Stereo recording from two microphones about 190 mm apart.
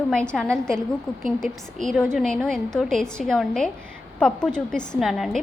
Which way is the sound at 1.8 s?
5° left (ahead or behind).